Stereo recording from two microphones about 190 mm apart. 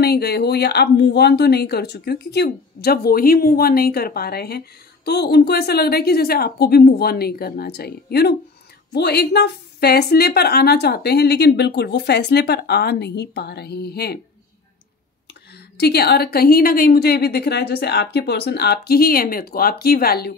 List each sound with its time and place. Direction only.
0.0 s speech: 55° left (ahead or behind)
15.5 s speech: 60° left (ahead or behind)